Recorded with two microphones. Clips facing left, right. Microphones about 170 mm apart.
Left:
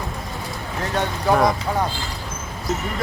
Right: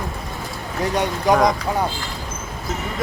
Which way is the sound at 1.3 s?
15° right (ahead or behind).